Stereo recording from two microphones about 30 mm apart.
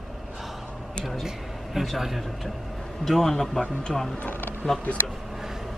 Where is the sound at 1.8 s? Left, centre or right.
Centre.